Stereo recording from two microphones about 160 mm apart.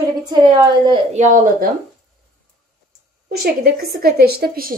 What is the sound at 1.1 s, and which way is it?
Speech, 45° right (ahead or behind).